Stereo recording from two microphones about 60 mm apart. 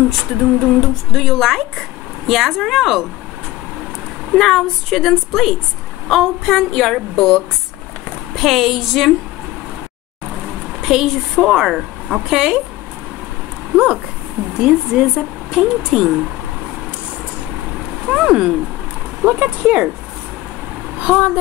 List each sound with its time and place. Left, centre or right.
0.1 s speech: centre
4.3 s a woman's voice: centre
8.4 s speech: centre
10.8 s a woman's voice: centre
14.6 s a woman's voice: centre
18.1 s a woman's voice: centre
19.2 s speech: right
21.0 s speech: centre